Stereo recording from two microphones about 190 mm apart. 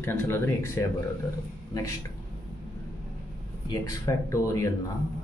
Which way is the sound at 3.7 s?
15° left (ahead or behind).